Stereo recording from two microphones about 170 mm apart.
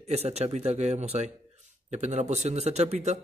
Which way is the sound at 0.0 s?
40° right (ahead or behind).